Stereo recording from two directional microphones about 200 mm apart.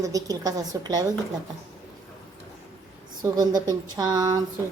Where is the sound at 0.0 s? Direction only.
15° right (ahead or behind).